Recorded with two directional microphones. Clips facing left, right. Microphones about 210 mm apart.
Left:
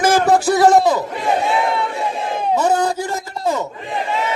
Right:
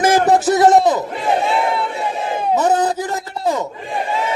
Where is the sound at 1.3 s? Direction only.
Centre (ahead or behind); by 2.8 s 20° right (ahead or behind).